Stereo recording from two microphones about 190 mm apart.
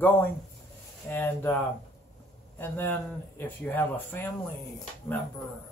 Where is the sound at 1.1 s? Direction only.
10° left (ahead or behind).